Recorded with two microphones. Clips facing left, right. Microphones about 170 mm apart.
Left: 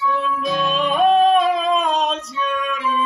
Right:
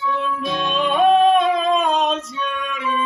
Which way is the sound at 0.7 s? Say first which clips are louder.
Right 1 dB; centre (ahead or behind).